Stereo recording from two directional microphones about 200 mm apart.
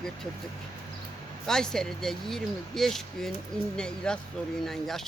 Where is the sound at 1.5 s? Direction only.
Centre (ahead or behind).